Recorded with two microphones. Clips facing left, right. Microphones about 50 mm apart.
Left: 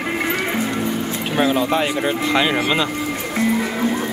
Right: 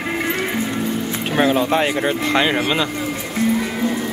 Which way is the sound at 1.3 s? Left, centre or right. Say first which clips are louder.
Right 1 dB; centre.